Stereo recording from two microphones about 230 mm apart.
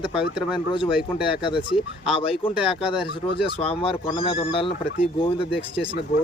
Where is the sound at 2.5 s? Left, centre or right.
Centre.